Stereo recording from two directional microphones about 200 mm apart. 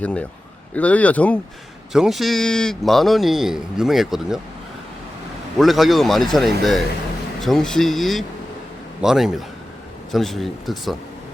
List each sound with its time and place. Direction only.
0.0 s a man's voice: 5° left (ahead or behind)
5.5 s a man's voice: centre (ahead or behind)